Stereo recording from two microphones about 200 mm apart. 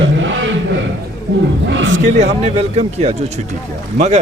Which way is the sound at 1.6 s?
65° right (ahead or behind).